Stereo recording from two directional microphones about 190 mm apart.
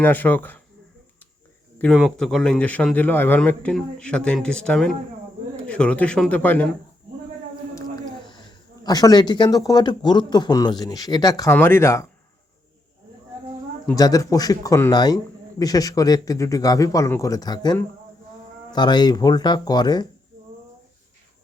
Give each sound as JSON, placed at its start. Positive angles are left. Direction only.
{"t": 0.0, "sound": "a man's voice", "side_deg": 10}
{"t": 1.8, "sound": "a man's voice", "side_deg": 0}
{"t": 8.2, "sound": "a man's voice", "side_deg": 25}
{"t": 13.8, "sound": "a man's voice", "side_deg": 20}